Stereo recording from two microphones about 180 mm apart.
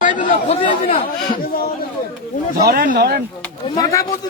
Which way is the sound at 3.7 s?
20° left (ahead or behind).